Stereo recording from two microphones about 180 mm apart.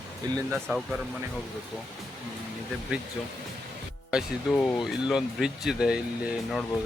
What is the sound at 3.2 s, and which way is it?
Speech, centre (ahead or behind).